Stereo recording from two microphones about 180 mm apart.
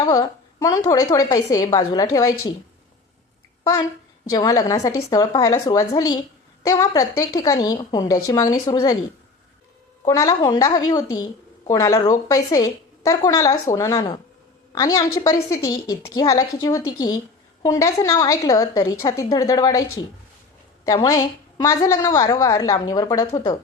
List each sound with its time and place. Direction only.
0.0 s a woman's voice: 20° left (ahead or behind)
3.6 s a child's voice: 20° left (ahead or behind)
10.1 s a woman's voice: 20° left (ahead or behind)